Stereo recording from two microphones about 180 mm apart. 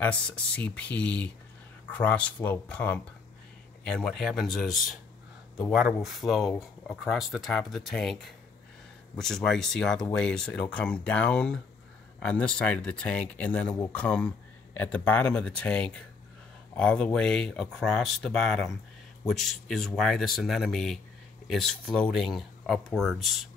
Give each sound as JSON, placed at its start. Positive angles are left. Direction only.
{"t": 0.0, "sound": "speech", "side_deg": 5}